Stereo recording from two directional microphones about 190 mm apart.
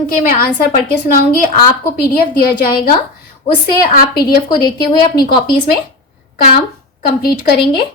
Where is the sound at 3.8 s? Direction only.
50° left (ahead or behind).